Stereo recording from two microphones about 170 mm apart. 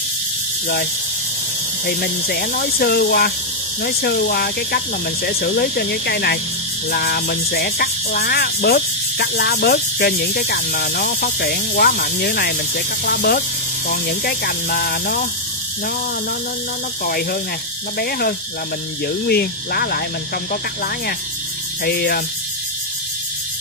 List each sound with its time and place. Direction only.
1.9 s speech: 60° left (ahead or behind)
17.0 s speech: 60° left (ahead or behind)
21.8 s speech: 65° left (ahead or behind)